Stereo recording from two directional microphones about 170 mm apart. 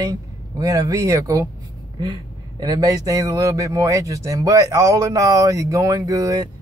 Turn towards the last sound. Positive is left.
turn(degrees=-20)  # may be behind; listen again after turning